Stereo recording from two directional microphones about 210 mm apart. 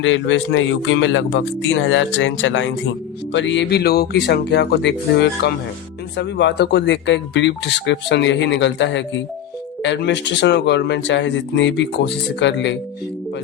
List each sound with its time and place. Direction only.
0.0 s speech: 65° left (ahead or behind)